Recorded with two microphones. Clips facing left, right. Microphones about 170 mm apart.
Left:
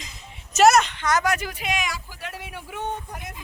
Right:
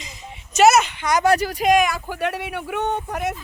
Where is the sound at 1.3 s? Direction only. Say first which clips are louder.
Right 9 dB; 35° right (ahead or behind); by 3.3 s 75° right (ahead or behind).